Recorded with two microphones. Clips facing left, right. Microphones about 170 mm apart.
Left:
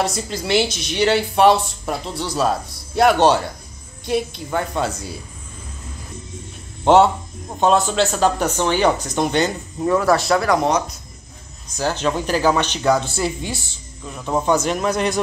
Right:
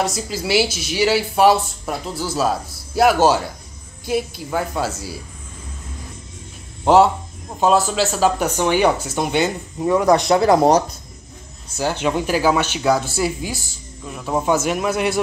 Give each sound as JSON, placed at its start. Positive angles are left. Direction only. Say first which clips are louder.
{"t": 0.0, "sound": "speech", "louder": "even", "side_deg": -5}
{"t": 6.8, "sound": "speech", "louder": "even", "side_deg": 0}
{"t": 11.8, "sound": "speech", "louder": "right 1 dB", "side_deg": -15}